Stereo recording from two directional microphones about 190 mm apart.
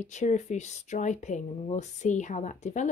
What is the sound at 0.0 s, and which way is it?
Speech, 40° left (ahead or behind).